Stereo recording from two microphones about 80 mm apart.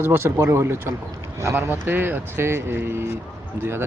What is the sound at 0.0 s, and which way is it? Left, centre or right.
Speech, right.